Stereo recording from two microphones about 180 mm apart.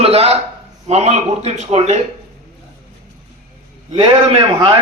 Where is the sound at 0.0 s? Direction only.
35° right (ahead or behind).